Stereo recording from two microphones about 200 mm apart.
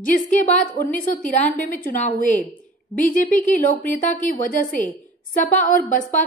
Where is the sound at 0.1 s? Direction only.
40° left (ahead or behind).